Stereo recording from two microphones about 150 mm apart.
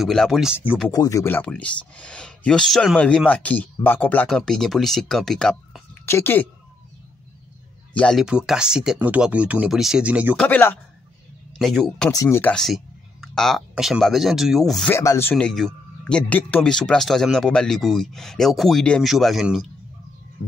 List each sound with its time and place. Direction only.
0.0 s speech: centre (ahead or behind)
0.9 s speech: 20° left (ahead or behind); by 5.8 s 5° left (ahead or behind)
6.0 s speech: 15° left (ahead or behind)
7.9 s speech: 5° left (ahead or behind)
10.3 s speech: 10° left (ahead or behind)
11.5 s speech: centre (ahead or behind)
12.1 s speech: 20° left (ahead or behind); by 14.9 s centre (ahead or behind)
14.9 s speech: 20° left (ahead or behind)
15.3 s speech: 5° left (ahead or behind)